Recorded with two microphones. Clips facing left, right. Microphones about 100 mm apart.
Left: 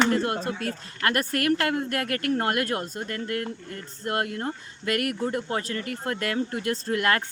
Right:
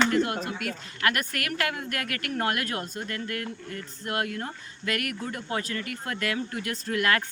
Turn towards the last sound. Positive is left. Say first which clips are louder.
# left 1 dB
turn(degrees=25)  # may be behind; listen again after turning